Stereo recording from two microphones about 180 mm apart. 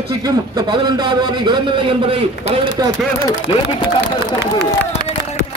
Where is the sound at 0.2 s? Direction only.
25° right (ahead or behind).